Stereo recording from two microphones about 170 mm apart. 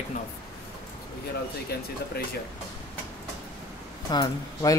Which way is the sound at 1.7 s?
70° left (ahead or behind).